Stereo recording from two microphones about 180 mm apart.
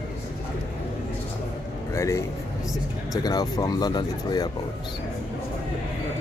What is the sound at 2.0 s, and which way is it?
Speech, 15° left (ahead or behind).